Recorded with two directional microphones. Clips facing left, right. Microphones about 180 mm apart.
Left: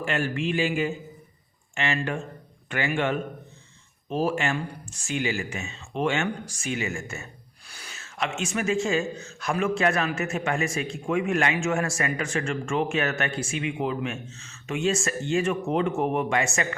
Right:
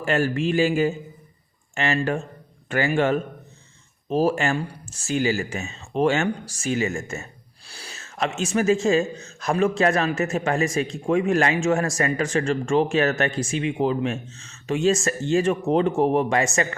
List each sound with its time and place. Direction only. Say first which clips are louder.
0.0 s a man's voice: right 5 dB; 40° right (ahead or behind)
7.7 s a sound: right 4 dB; 30° right (ahead or behind)
8.5 s a man's voice: right 6 dB; 40° right (ahead or behind)